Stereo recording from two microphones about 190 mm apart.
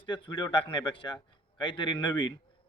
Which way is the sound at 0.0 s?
25° left (ahead or behind).